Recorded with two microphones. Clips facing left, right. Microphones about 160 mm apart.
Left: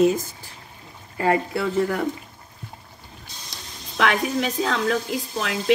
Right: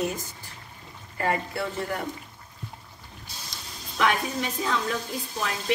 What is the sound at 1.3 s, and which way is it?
Speech, 90° left.